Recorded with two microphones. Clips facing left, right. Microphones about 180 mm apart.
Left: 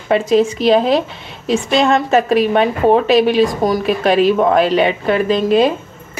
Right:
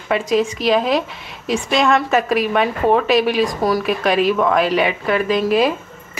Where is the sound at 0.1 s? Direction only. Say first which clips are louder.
Left 5 dB; 30° left (ahead or behind).